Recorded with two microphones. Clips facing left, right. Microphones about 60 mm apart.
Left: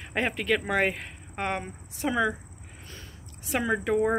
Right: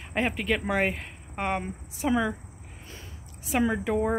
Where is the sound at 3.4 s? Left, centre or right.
Centre.